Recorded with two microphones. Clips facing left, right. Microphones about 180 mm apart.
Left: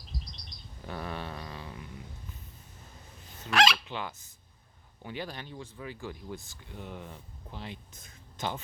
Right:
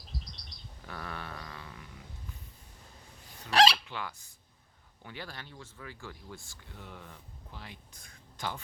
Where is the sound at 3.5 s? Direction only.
35° right (ahead or behind).